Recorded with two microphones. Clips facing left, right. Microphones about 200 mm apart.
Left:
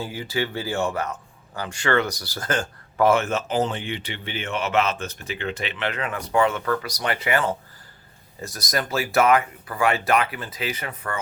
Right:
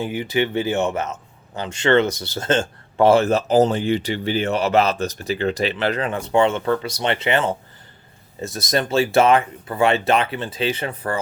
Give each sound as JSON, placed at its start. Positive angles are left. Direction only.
{"t": 0.0, "sound": "a man's voice", "side_deg": -20}